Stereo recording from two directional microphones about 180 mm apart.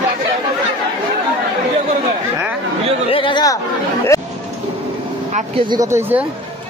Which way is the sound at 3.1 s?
30° left (ahead or behind).